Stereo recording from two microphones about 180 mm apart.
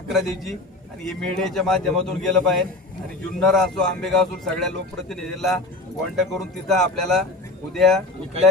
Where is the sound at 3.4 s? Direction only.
Centre (ahead or behind).